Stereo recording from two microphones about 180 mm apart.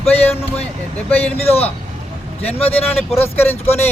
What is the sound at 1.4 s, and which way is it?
Speech, 35° left (ahead or behind).